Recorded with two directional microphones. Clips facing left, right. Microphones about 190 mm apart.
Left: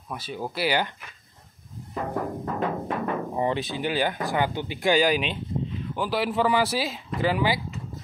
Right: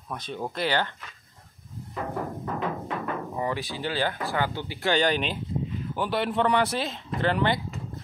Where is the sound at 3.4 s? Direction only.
25° left (ahead or behind); by 7.6 s 5° left (ahead or behind).